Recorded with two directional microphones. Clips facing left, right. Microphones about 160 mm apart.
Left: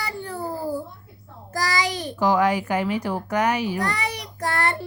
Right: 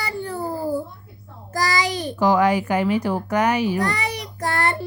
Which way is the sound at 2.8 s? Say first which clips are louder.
Right 4 dB; 80° right.